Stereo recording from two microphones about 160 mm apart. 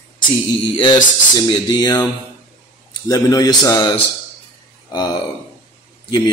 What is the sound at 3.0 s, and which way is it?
Speech, 25° left (ahead or behind).